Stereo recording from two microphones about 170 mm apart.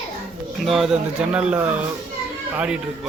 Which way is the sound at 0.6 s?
Centre (ahead or behind).